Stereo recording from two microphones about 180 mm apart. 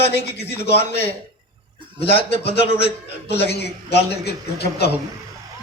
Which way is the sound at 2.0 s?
30° left (ahead or behind).